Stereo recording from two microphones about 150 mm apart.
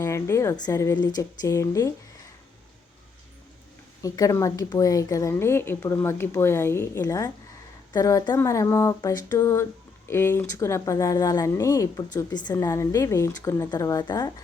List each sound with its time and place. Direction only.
0.0 s a woman's voice: 20° left (ahead or behind)
4.0 s a woman's voice: 25° left (ahead or behind)
12.5 s a woman's voice: 20° left (ahead or behind)